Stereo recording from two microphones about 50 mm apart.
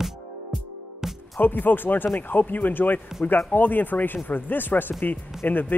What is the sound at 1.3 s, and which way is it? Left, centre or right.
Speech, left.